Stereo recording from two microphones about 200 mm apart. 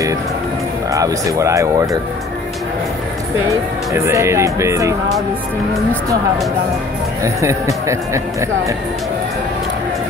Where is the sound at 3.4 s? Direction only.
15° right (ahead or behind).